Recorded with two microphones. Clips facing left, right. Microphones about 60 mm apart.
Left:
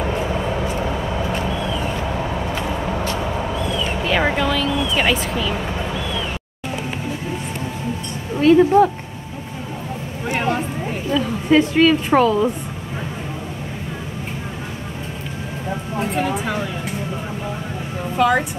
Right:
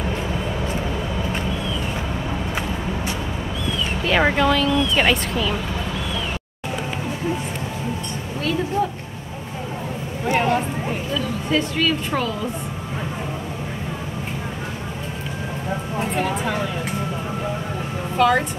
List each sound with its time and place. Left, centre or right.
4.0 s speech: centre
8.4 s speech: left
10.2 s a sound: centre
11.1 s a woman's voice: left
16.0 s speech: centre
18.1 s speech: centre